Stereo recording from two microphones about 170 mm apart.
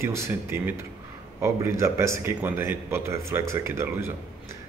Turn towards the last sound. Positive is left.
turn(degrees=-15)  # may be behind; listen again after turning